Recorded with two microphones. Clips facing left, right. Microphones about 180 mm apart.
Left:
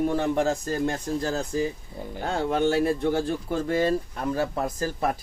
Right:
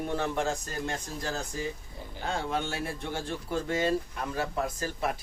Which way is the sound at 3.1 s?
40° left (ahead or behind).